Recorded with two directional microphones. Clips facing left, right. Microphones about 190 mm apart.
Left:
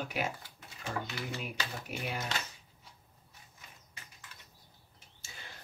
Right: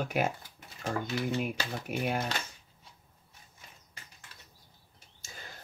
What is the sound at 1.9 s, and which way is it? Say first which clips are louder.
Speech: right 9 dB; 50° right (ahead or behind).